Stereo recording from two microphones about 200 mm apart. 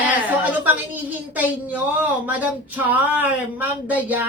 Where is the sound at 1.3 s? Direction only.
10° right (ahead or behind).